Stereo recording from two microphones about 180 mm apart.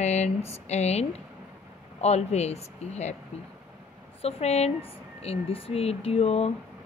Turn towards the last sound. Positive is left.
turn(degrees=35)  # may be behind; listen again after turning